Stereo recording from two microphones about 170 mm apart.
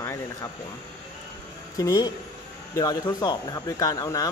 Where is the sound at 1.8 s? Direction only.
20° left (ahead or behind).